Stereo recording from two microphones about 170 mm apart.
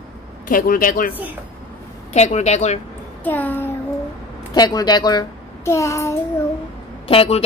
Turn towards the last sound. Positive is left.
turn(degrees=35)  # may be behind; listen again after turning